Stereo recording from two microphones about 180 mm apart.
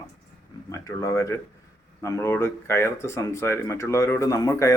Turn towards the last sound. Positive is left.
turn(degrees=15)  # may be behind; listen again after turning